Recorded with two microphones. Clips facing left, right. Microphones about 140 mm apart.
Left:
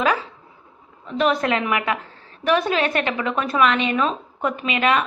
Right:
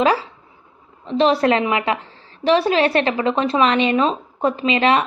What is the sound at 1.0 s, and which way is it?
A woman's voice, 30° right (ahead or behind).